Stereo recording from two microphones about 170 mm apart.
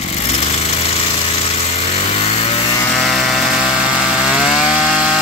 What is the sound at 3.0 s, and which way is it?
Chainsaw, centre (ahead or behind).